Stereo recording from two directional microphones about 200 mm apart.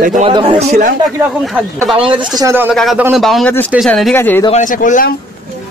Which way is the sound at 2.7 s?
Centre (ahead or behind).